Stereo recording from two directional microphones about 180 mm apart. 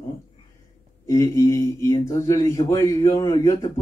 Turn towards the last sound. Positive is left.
turn(degrees=15)  # may be behind; listen again after turning